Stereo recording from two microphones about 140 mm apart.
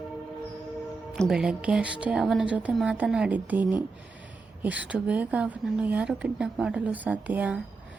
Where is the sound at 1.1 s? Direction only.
Centre (ahead or behind).